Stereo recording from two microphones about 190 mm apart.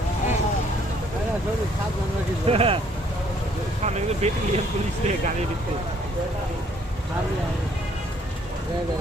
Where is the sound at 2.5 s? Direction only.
30° right (ahead or behind).